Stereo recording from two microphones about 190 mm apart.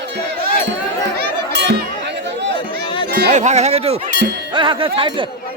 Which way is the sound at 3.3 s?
35° right (ahead or behind).